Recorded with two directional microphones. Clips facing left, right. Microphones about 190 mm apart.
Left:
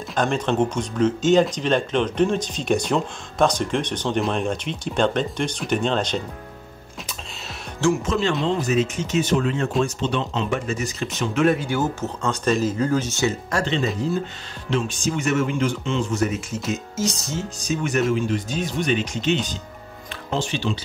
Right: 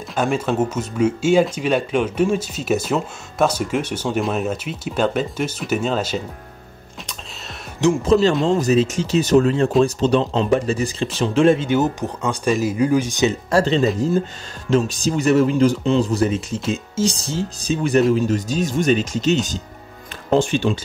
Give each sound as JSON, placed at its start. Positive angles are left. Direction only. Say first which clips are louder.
{"t": 0.1, "sound": "speech", "louder": "right 2 dB", "side_deg": -5}
{"t": 8.0, "sound": "speech", "louder": "right 7 dB", "side_deg": -35}
{"t": 13.5, "sound": "speech", "louder": "right 6 dB", "side_deg": -35}